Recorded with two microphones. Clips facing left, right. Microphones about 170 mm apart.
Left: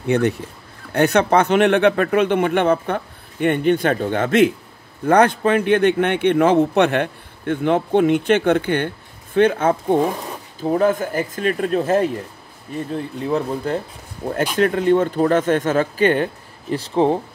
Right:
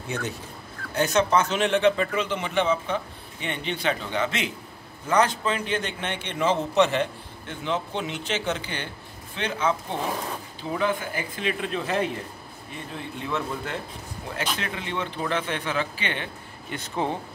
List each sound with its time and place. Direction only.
0.0 s a man's voice: 65° left (ahead or behind); by 17.2 s 30° left (ahead or behind)